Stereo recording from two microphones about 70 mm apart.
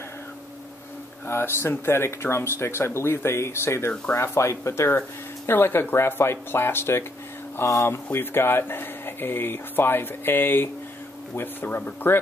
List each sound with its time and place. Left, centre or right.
1.2 s speech: left